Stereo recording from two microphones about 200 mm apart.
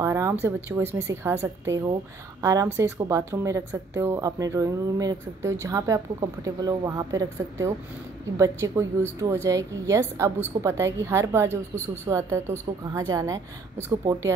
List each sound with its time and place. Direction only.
0.0 s speech: 15° right (ahead or behind)